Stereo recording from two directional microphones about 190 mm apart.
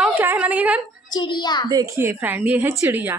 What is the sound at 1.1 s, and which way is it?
Speech, 25° left (ahead or behind).